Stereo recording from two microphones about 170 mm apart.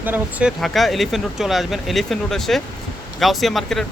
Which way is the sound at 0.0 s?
10° right (ahead or behind).